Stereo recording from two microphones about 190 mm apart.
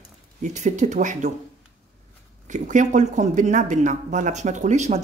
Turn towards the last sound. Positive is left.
turn(degrees=-35)  # may be behind; listen again after turning